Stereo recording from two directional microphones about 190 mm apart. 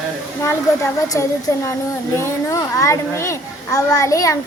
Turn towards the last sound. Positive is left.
turn(degrees=15)  # may be behind; listen again after turning